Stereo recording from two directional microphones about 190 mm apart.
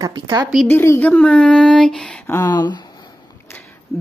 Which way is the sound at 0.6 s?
10° left (ahead or behind).